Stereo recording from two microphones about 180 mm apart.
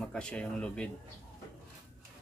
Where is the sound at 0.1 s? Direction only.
5° left (ahead or behind).